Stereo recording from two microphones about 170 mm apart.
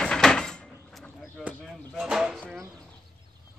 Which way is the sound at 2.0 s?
5° right (ahead or behind).